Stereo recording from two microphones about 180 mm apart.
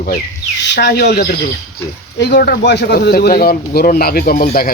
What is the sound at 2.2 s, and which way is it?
Speech, 65° left (ahead or behind).